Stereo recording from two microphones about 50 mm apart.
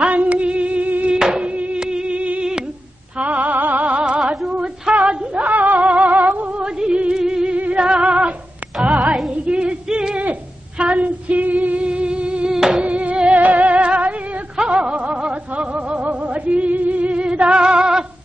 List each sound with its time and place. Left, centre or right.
0.0 s music: right
1.1 s music: centre
1.5 s a sound: right
1.8 s music: centre; by 3.8 s right
3.8 s music: right
4.5 s female singing: right
6.6 s music: centre
9.3 s female singing: right
10.8 s music: right
12.5 s music: centre
12.8 s music: right